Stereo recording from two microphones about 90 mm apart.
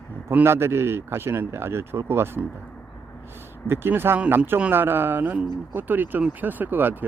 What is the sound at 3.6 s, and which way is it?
Speech, 25° right (ahead or behind).